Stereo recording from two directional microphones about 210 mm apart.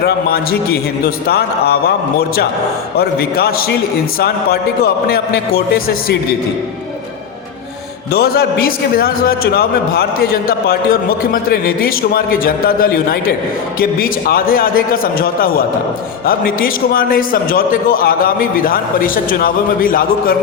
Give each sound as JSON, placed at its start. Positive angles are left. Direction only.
{"t": 0.0, "sound": "a man's voice", "side_deg": 50}
{"t": 8.1, "sound": "a man's voice", "side_deg": 50}